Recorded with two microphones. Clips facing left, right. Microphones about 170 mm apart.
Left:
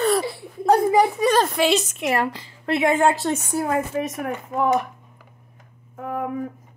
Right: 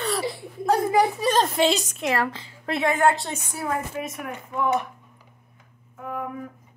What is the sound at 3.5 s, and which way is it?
Speech, 40° left (ahead or behind).